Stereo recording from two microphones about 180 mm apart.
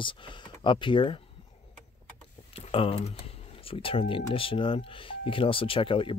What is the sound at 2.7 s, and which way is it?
Speech, 30° left (ahead or behind).